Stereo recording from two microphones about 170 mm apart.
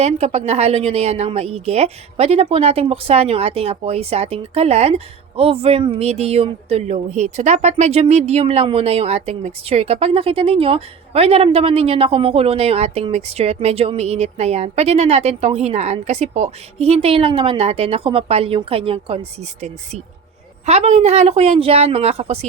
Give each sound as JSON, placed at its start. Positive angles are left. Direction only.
{"t": 0.0, "sound": "a woman's voice", "side_deg": -40}
{"t": 20.7, "sound": "a woman's voice", "side_deg": -40}